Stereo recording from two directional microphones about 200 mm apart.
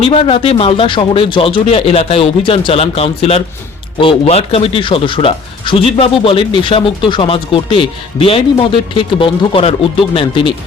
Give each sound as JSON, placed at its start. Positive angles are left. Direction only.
{"t": 0.0, "sound": "speech", "side_deg": 30}